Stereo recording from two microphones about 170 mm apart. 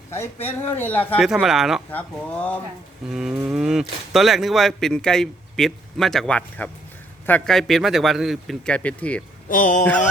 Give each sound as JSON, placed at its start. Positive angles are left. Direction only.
{"t": 0.1, "sound": "a man's voice", "side_deg": 15}
{"t": 1.2, "sound": "cattle", "side_deg": 0}
{"t": 1.9, "sound": "a man's voice", "side_deg": 10}
{"t": 3.2, "sound": "cattle", "side_deg": -5}
{"t": 9.5, "sound": "speech", "side_deg": 50}